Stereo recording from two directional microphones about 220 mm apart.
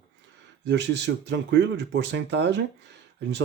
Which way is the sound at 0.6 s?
55° right (ahead or behind).